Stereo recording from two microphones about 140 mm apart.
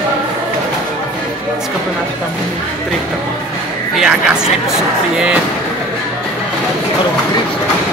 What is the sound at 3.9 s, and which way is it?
Speech, 5° right (ahead or behind).